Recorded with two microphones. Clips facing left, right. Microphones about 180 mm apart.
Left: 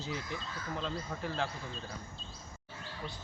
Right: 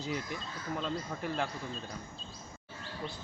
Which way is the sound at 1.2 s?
15° right (ahead or behind).